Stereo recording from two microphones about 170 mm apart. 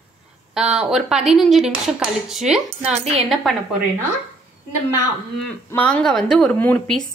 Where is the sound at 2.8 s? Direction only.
40° right (ahead or behind).